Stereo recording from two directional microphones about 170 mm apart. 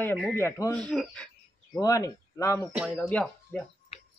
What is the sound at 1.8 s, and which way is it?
Speech, 20° left (ahead or behind).